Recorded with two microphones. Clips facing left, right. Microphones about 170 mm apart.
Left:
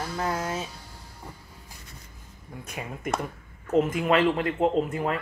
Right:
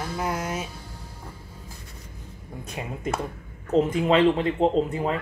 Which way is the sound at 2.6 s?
25° right (ahead or behind).